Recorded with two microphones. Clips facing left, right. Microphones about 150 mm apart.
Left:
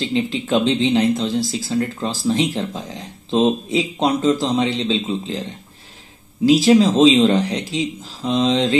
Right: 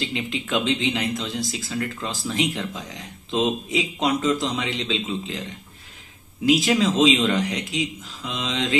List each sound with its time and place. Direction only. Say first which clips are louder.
0.1 s speech: left 7 dB; 35° left (ahead or behind)
6.4 s speech: left 7 dB; 30° left (ahead or behind)